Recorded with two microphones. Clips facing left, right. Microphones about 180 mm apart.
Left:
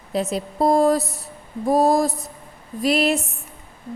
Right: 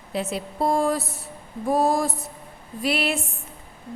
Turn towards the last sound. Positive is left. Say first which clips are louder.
# left 5 dB
turn(degrees=40)  # may be behind; listen again after turning